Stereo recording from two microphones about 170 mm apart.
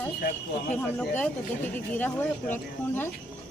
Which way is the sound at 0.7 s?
10° left (ahead or behind).